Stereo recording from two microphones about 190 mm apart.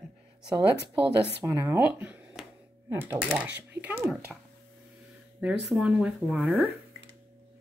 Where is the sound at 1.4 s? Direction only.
15° right (ahead or behind); by 4.4 s centre (ahead or behind).